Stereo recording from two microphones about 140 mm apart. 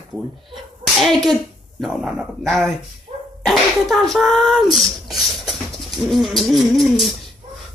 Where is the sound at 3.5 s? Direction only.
Centre (ahead or behind).